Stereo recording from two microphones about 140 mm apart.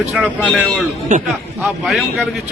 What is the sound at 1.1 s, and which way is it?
Speech, 55° right (ahead or behind).